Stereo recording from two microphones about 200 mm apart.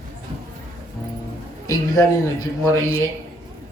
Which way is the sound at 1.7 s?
20° left (ahead or behind).